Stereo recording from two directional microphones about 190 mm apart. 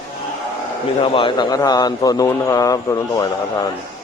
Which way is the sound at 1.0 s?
25° left (ahead or behind).